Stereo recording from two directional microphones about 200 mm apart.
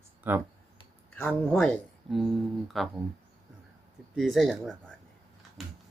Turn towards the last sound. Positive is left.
turn(degrees=0)  # may be behind; listen again after turning